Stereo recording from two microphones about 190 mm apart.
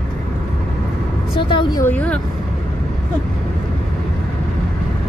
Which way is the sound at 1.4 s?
25° left (ahead or behind).